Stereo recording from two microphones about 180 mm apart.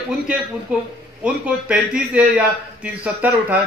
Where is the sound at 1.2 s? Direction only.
5° right (ahead or behind).